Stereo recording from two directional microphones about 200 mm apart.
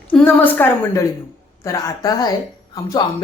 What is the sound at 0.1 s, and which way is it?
A woman's voice, 10° left (ahead or behind).